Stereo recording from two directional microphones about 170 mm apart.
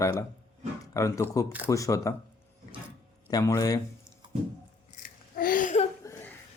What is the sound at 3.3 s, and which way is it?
Speech, 20° left (ahead or behind).